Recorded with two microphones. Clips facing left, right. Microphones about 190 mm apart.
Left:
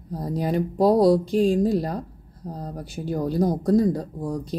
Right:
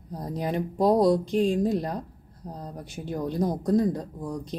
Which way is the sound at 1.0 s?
35° left (ahead or behind).